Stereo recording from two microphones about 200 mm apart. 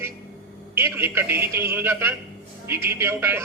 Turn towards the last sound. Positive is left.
turn(degrees=-10)  # may be behind; listen again after turning